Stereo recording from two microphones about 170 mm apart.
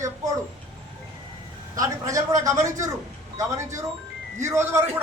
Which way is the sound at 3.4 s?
15° right (ahead or behind).